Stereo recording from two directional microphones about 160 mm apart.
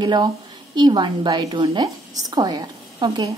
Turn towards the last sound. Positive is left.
turn(degrees=-30)  # may be behind; listen again after turning